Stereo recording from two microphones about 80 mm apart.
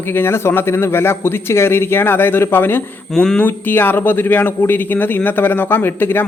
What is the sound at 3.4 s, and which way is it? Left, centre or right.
A man's voice, left.